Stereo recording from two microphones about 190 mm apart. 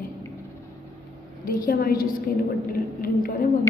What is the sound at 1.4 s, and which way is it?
A woman's voice, 50° left (ahead or behind).